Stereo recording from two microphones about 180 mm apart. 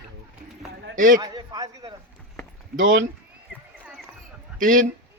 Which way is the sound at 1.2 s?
20° right (ahead or behind).